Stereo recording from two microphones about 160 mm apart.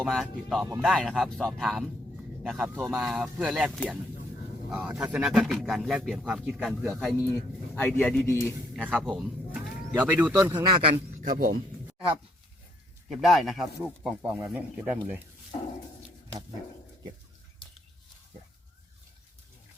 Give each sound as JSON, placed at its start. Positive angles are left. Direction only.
{"t": 0.0, "sound": "speech", "side_deg": 0}
{"t": 7.8, "sound": "a man's voice", "side_deg": 10}
{"t": 8.7, "sound": "speech", "side_deg": 0}
{"t": 10.5, "sound": "a man's voice", "side_deg": -30}
{"t": 11.2, "sound": "a man's voice", "side_deg": -60}
{"t": 13.1, "sound": "speech", "side_deg": 0}
{"t": 14.2, "sound": "speech", "side_deg": -15}